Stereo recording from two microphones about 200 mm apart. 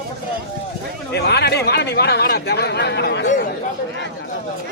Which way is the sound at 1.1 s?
55° left (ahead or behind).